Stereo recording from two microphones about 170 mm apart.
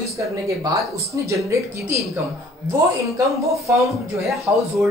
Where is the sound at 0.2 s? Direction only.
20° right (ahead or behind).